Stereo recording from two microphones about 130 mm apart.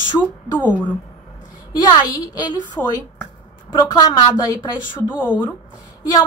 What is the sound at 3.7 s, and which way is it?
A woman's voice, 35° left (ahead or behind).